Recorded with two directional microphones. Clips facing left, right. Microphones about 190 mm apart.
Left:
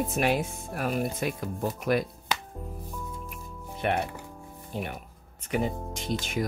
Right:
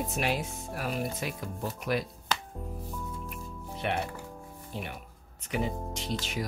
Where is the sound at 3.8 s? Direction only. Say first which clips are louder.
Left 4 dB; 50° left (ahead or behind).